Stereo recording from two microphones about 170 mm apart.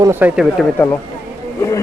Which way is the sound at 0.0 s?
10° right (ahead or behind).